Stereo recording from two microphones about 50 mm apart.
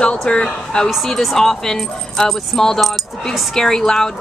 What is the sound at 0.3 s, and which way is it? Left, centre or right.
Speech, centre.